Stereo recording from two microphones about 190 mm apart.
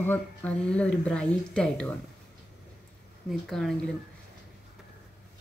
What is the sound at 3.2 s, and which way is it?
Speech, centre (ahead or behind).